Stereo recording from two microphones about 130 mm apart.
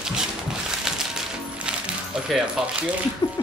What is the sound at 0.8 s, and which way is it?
Music, 5° right (ahead or behind).